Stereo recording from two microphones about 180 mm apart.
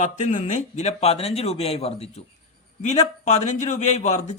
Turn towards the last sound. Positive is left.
turn(degrees=40)  # may be behind; listen again after turning